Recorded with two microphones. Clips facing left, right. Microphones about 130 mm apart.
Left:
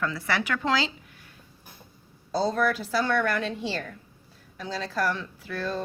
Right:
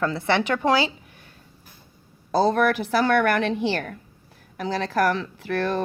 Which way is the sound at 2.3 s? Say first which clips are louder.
Right 5 dB; 65° right (ahead or behind).